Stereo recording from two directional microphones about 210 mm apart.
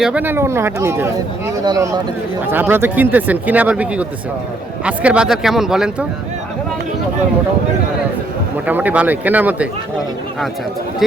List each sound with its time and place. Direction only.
0.0 s speech: 5° right (ahead or behind)
8.6 s speech: 5° right (ahead or behind)